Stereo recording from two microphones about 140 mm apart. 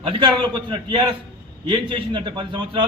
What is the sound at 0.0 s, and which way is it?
A man's voice, 40° right (ahead or behind).